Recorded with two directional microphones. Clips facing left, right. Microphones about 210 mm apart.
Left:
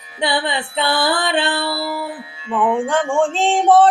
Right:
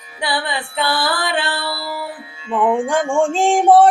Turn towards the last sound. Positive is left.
turn(degrees=-10)  # may be behind; listen again after turning